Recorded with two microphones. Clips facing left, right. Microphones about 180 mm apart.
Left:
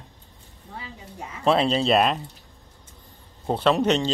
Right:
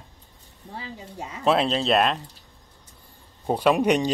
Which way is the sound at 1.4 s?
Centre (ahead or behind).